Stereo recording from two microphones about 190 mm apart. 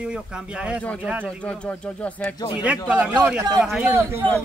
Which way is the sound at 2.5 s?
5° right (ahead or behind).